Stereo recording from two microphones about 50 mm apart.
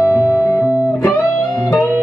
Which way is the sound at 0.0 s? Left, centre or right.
Left.